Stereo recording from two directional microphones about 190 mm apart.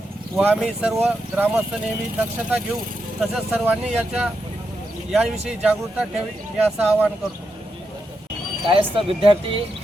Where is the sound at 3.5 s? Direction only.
10° right (ahead or behind).